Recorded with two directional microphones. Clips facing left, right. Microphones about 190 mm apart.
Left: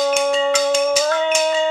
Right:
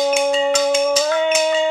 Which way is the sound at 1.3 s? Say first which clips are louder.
Right 1 dB; 10° right (ahead or behind).